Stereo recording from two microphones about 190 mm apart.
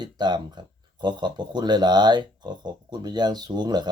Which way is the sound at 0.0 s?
25° right (ahead or behind).